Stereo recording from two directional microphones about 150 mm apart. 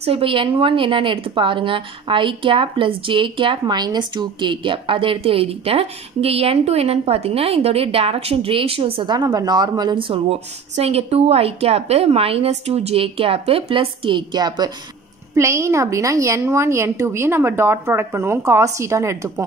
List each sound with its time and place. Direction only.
0.0 s a woman's voice: 40° right (ahead or behind); by 19.4 s 20° right (ahead or behind)